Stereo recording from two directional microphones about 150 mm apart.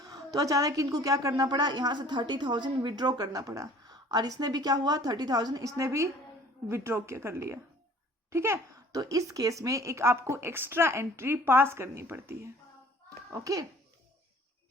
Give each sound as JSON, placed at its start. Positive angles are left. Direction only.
{"t": 0.1, "sound": "a woman's voice", "side_deg": -25}